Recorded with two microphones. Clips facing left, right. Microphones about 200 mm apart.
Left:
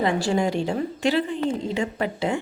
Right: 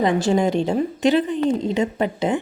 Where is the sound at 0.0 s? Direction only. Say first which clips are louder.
Right 4 dB; 20° right (ahead or behind).